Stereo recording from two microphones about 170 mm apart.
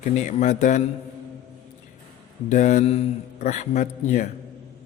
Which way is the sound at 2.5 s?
45° left (ahead or behind).